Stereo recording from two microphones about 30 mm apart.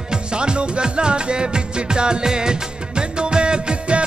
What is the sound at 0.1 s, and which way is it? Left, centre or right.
Music, right.